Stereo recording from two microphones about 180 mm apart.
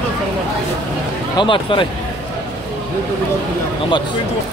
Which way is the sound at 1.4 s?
30° left (ahead or behind).